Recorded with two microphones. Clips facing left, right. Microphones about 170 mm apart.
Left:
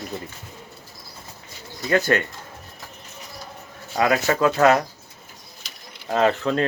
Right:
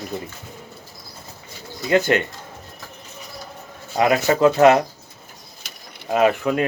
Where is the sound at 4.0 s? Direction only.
20° right (ahead or behind).